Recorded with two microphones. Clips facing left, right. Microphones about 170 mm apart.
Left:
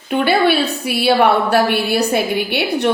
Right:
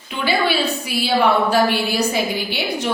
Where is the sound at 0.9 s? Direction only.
65° left (ahead or behind).